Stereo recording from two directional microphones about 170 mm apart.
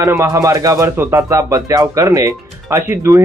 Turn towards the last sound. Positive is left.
turn(degrees=-15)  # may be behind; listen again after turning